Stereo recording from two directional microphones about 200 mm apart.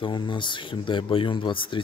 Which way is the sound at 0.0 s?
25° left (ahead or behind).